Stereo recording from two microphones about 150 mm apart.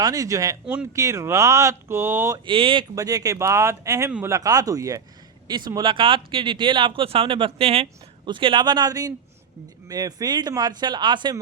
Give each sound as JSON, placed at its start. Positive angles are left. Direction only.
{"t": 0.0, "sound": "speech", "side_deg": -25}
{"t": 0.6, "sound": "speech", "side_deg": -5}
{"t": 0.9, "sound": "speech", "side_deg": -20}
{"t": 2.5, "sound": "speech", "side_deg": -35}
{"t": 2.9, "sound": "speech", "side_deg": -25}